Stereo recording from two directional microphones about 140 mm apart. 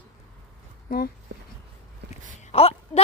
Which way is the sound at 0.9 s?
75° left (ahead or behind).